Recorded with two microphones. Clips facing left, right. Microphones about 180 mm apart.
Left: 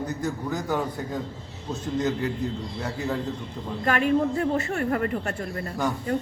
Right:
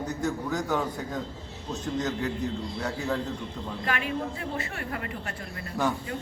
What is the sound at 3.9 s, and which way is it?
A woman's voice, 45° left (ahead or behind).